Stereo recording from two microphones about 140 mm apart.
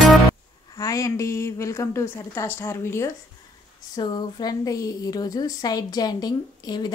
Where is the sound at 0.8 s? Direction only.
25° left (ahead or behind).